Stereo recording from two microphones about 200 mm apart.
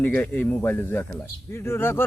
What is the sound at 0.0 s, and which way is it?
Speech, 10° left (ahead or behind).